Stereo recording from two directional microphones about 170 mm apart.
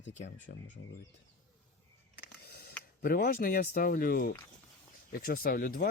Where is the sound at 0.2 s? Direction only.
50° left (ahead or behind).